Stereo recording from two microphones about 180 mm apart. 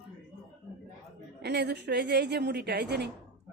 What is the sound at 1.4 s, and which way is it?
A woman's voice, 65° right (ahead or behind).